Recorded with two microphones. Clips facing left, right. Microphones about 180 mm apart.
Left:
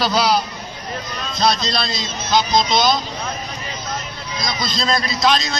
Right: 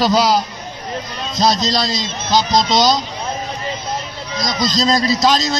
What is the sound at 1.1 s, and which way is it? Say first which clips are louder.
Speech: right 2 dB; 20° right (ahead or behind).